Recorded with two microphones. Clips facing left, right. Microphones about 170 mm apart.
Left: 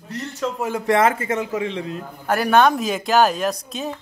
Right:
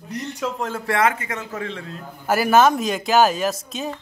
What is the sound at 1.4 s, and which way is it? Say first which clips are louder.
Speech: left 6 dB; 15° left (ahead or behind).